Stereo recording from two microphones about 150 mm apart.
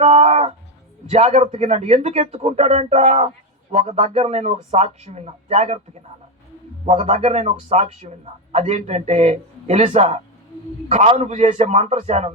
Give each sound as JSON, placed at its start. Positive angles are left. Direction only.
{"t": 0.0, "sound": "a sound", "side_deg": -45}
{"t": 1.1, "sound": "speech", "side_deg": -50}
{"t": 6.8, "sound": "speech", "side_deg": -40}